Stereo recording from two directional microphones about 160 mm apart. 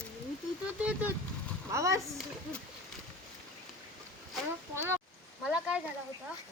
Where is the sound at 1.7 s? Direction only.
20° right (ahead or behind).